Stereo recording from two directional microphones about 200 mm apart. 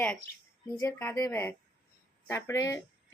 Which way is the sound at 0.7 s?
15° left (ahead or behind).